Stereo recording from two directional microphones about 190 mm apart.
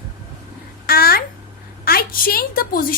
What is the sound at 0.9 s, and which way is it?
Babbling, 55° left (ahead or behind).